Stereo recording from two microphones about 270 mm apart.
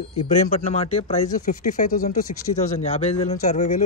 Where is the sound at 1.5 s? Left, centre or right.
Left.